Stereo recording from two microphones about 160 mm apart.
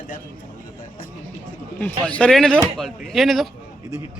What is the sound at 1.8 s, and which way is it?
Speech, 10° left (ahead or behind).